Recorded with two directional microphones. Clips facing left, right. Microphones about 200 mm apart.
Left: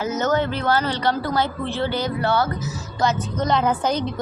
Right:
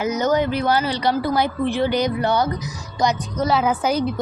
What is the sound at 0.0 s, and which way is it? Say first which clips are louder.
A woman's voice: right 2 dB; 15° right (ahead or behind).